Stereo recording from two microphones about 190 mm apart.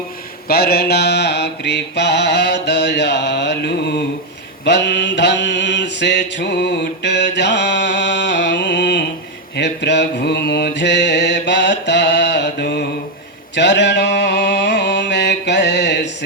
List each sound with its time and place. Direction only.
0.4 s mantra: 55° left (ahead or behind)